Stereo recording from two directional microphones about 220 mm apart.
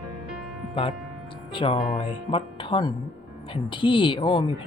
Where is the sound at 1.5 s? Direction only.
20° left (ahead or behind).